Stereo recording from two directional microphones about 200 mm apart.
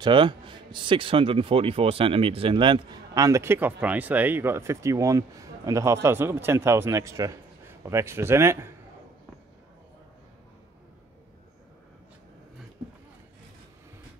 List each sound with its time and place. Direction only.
0.0 s a man's voice: 25° right (ahead or behind)